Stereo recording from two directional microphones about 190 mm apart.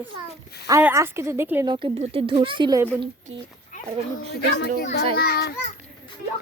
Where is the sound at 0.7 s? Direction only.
10° right (ahead or behind).